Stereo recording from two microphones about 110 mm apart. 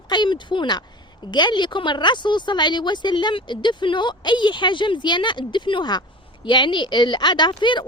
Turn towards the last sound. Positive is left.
turn(degrees=45)  # may be behind; listen again after turning